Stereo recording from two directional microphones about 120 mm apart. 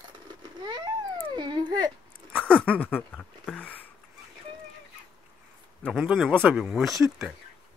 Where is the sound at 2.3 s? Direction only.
10° left (ahead or behind).